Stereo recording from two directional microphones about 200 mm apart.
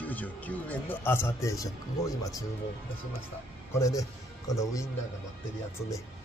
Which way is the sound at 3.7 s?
15° left (ahead or behind).